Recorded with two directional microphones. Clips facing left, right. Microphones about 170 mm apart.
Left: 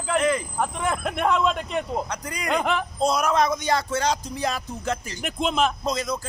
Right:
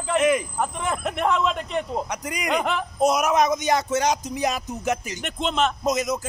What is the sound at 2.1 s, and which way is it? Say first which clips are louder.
Speech: right 2 dB; 20° right (ahead or behind).